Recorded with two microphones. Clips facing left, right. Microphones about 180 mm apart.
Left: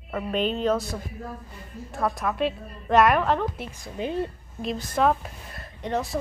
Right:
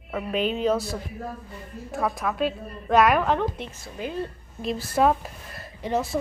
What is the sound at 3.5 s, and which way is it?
Speech, 15° left (ahead or behind).